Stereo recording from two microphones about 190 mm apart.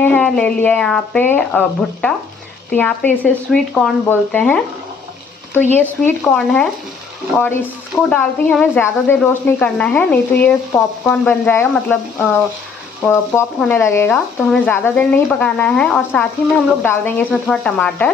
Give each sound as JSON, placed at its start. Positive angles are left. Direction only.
{"t": 0.0, "sound": "speech", "side_deg": 5}
{"t": 8.1, "sound": "speech", "side_deg": 5}